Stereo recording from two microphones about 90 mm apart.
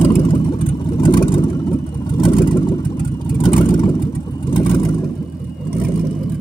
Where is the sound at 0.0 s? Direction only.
70° left (ahead or behind).